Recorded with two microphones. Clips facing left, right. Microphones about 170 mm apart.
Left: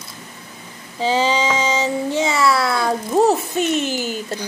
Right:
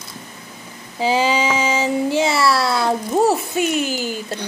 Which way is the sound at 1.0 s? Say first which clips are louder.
Even; 10° right (ahead or behind).